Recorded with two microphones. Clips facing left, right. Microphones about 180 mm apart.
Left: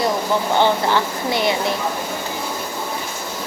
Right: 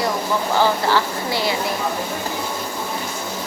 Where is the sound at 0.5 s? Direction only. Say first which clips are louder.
Even; 20° left (ahead or behind).